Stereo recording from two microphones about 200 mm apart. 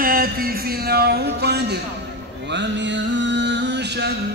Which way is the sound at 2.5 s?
60° right (ahead or behind).